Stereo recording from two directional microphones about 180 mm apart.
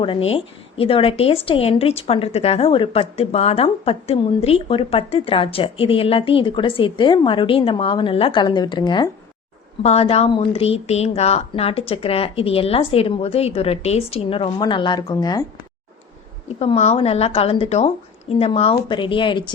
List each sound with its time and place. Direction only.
0.0 s a woman's voice: 30° left (ahead or behind)
16.6 s a woman's voice: 35° left (ahead or behind)